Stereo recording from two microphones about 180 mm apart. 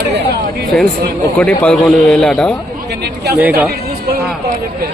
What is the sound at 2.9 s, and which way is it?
Speech, 65° right (ahead or behind).